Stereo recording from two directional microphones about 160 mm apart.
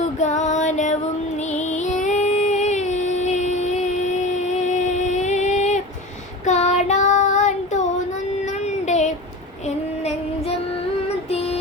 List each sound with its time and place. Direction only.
0.2 s female singing: 50° left (ahead or behind)
6.4 s child singing: 45° left (ahead or behind)